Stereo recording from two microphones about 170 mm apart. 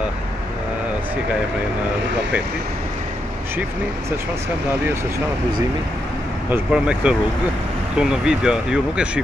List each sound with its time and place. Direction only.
6.5 s speech: 5° right (ahead or behind)